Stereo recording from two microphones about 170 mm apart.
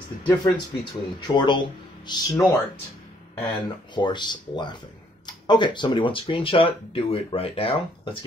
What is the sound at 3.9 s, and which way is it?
Speech, 25° left (ahead or behind).